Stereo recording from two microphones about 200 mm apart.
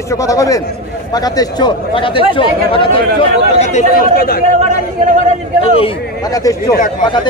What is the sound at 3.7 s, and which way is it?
Speech, 40° left (ahead or behind).